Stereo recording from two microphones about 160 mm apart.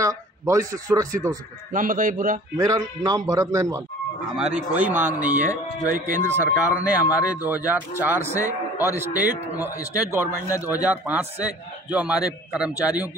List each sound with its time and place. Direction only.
0.0 s a man's voice: 20° right (ahead or behind)
1.7 s speech: 55° right (ahead or behind)
2.5 s a man's voice: 20° right (ahead or behind)
4.4 s speech: 5° right (ahead or behind)